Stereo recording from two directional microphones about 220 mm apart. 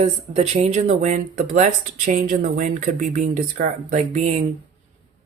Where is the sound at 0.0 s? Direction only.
30° right (ahead or behind).